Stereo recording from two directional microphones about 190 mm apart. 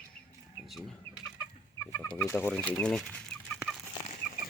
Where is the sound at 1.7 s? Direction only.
10° left (ahead or behind).